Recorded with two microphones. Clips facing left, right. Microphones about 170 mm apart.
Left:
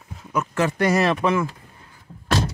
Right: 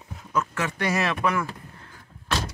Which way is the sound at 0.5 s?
40° left (ahead or behind).